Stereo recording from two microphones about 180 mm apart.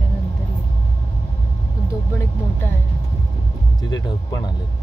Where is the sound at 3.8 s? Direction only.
20° left (ahead or behind).